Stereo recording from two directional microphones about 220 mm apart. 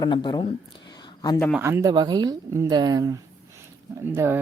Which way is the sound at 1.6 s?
15° right (ahead or behind).